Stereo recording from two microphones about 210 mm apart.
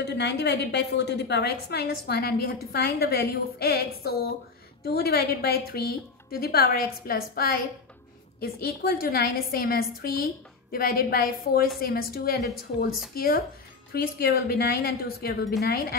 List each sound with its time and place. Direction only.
0.0 s a woman's voice: 50° left (ahead or behind)